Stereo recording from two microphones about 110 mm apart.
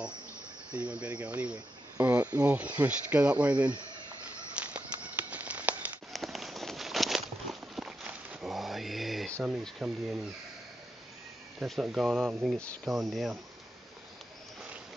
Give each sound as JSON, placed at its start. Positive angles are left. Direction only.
{"t": 0.7, "sound": "speech", "side_deg": -10}
{"t": 2.0, "sound": "cricket", "side_deg": -35}
{"t": 2.4, "sound": "speech", "side_deg": -10}
{"t": 4.6, "sound": "a sound", "side_deg": -10}
{"t": 6.1, "sound": "walk", "side_deg": 0}
{"t": 8.5, "sound": "a sound", "side_deg": 0}
{"t": 9.6, "sound": "speech", "side_deg": 0}
{"t": 11.6, "sound": "speech", "side_deg": 0}